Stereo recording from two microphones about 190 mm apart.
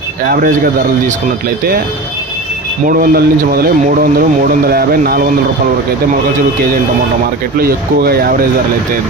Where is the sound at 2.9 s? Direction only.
50° right (ahead or behind).